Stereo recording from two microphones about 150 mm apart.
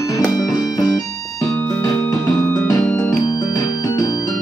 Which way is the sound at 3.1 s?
25° left (ahead or behind).